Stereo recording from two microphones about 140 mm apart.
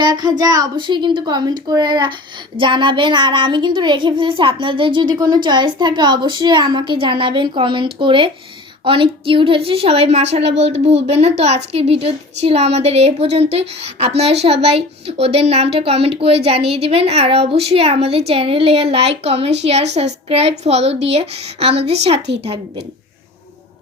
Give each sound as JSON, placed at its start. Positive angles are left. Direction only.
{"t": 0.0, "sound": "a child's voice", "side_deg": -30}